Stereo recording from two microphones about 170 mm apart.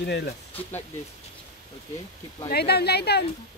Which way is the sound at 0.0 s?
75° left (ahead or behind).